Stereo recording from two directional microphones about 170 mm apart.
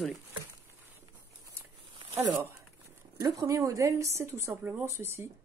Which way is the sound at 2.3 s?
15° right (ahead or behind).